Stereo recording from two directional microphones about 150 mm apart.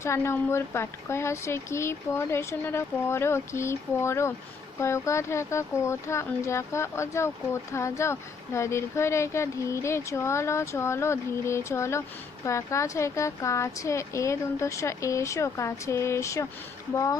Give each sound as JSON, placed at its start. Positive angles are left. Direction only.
{"t": 0.0, "sound": "speech", "side_deg": 20}